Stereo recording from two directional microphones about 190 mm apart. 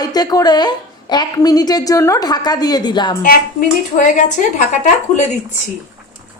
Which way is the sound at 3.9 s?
40° left (ahead or behind).